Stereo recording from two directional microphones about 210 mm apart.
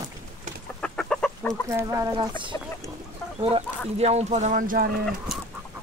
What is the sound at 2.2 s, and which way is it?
Speech, 25° right (ahead or behind).